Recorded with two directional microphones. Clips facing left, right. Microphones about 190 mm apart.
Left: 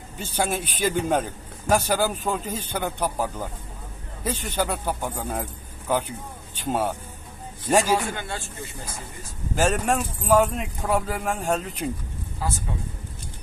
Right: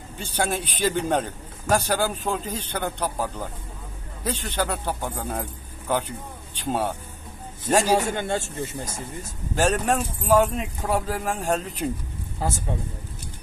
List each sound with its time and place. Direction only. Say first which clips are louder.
0.2 s a man's voice: even; centre (ahead or behind)
8.1 s speech: right 6 dB; 45° right (ahead or behind)
9.6 s speech: even; centre (ahead or behind)
12.4 s a man's voice: right 2 dB; 45° right (ahead or behind)